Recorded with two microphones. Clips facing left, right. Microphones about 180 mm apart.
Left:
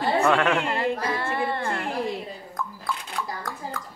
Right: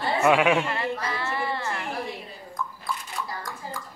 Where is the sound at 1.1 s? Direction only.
50° left (ahead or behind).